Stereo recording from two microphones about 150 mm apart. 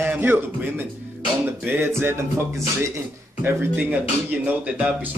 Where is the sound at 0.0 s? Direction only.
10° right (ahead or behind).